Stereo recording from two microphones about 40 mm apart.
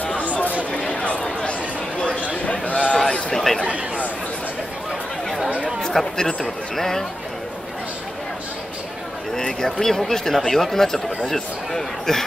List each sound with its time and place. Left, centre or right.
0.0 s a sound: left
1.4 s chatter: left
2.4 s a sound: left
3.3 s speech: centre
3.6 s chatter: right
5.8 s speech: centre
9.3 s speech: centre